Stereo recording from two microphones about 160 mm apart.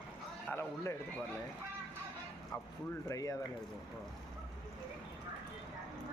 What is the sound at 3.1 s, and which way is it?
Speech, 20° left (ahead or behind).